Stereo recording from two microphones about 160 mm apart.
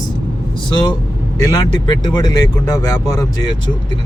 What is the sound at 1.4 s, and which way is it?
Speech, 25° left (ahead or behind).